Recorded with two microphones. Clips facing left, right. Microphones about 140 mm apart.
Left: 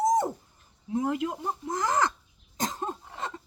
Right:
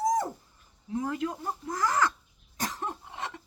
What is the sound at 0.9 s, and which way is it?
Speech, 25° left (ahead or behind).